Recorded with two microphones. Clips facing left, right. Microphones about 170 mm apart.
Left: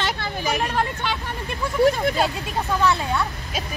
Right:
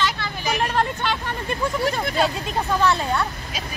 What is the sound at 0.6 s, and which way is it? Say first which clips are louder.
Vehicle: right 1 dB; 5° left (ahead or behind).